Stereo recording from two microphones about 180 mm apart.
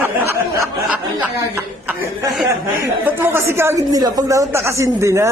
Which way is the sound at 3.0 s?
10° right (ahead or behind).